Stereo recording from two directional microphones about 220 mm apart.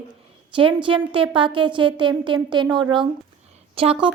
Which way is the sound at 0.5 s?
25° right (ahead or behind).